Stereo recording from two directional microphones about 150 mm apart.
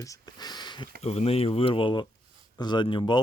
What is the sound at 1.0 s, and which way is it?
Speech, 45° left (ahead or behind).